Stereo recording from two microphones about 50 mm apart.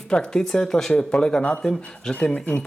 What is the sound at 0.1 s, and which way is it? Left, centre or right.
A woman's voice, centre.